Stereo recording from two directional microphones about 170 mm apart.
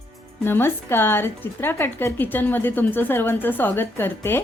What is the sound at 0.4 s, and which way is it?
A woman's voice, 15° left (ahead or behind).